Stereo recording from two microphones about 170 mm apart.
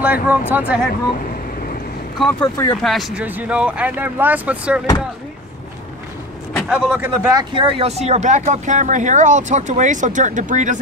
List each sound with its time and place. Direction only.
0.0 s speech: 10° right (ahead or behind)
2.4 s speech: 20° left (ahead or behind)
2.7 s speech: centre (ahead or behind)
6.7 s speech: 10° right (ahead or behind)
7.3 s speech: 30° right (ahead or behind); by 10.8 s 45° right (ahead or behind)